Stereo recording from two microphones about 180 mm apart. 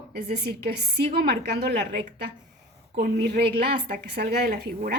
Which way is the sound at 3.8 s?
60° right (ahead or behind).